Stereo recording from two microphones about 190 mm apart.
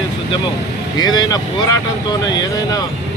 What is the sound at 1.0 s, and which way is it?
Speech, 20° left (ahead or behind).